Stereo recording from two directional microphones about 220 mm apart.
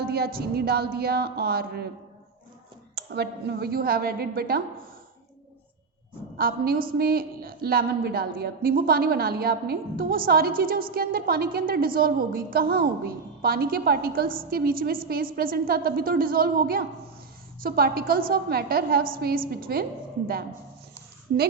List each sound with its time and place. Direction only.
0.0 s a sound: 45° right (ahead or behind)
0.3 s a woman's voice: 45° right (ahead or behind)
2.9 s a woman's voice: 50° right (ahead or behind)
6.3 s a woman's voice: 40° right (ahead or behind)